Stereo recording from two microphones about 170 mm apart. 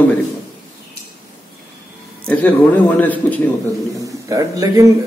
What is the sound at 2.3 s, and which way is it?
Speech, 10° left (ahead or behind).